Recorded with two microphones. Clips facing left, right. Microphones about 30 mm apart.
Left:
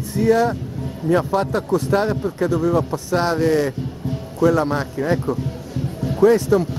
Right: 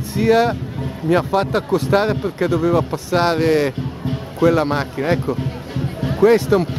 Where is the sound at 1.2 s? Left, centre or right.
Right.